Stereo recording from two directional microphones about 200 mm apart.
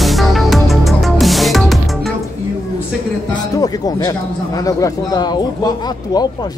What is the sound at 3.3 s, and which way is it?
A man's voice, 20° left (ahead or behind).